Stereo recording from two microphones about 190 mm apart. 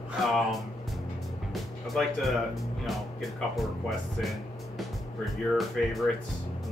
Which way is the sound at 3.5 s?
Centre (ahead or behind).